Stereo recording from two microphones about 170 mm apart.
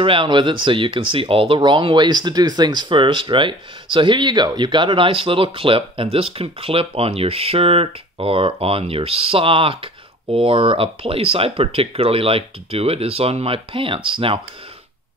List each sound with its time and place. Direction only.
0.0 s speech: 30° right (ahead or behind)